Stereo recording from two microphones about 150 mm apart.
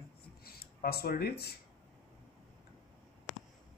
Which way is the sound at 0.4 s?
90° left.